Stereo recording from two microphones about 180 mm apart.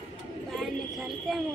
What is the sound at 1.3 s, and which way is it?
Speech, centre (ahead or behind).